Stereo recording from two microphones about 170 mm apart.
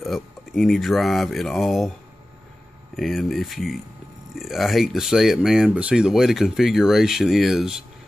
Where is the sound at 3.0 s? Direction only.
Centre (ahead or behind).